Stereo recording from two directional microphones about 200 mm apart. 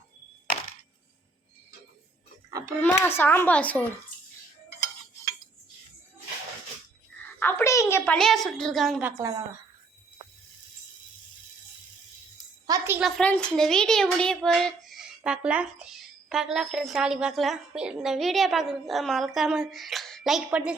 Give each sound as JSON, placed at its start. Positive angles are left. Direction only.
{"t": 2.5, "sound": "a child's voice", "side_deg": -15}
{"t": 2.8, "sound": "speech", "side_deg": 10}
{"t": 7.3, "sound": "a woman's voice", "side_deg": 10}
{"t": 12.6, "sound": "a sound", "side_deg": -15}
{"t": 13.0, "sound": "a child's voice", "side_deg": 0}